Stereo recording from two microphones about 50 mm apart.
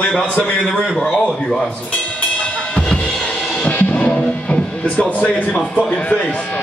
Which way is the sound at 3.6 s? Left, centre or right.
Left.